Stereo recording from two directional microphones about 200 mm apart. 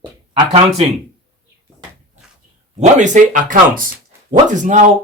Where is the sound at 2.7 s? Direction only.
35° right (ahead or behind).